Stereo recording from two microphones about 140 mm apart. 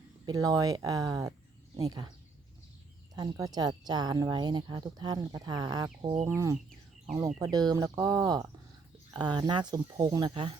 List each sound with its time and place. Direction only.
0.3 s speech: 25° right (ahead or behind)
3.2 s speech: 25° right (ahead or behind)
6.2 s speech: 20° right (ahead or behind)